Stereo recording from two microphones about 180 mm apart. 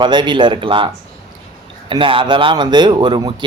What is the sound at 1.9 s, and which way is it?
Speech, 30° right (ahead or behind).